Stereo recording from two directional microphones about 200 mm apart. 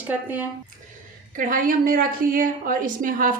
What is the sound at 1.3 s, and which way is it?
A woman's voice, 45° right (ahead or behind).